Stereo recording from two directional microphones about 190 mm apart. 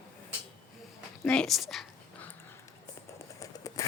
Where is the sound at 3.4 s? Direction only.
15° left (ahead or behind).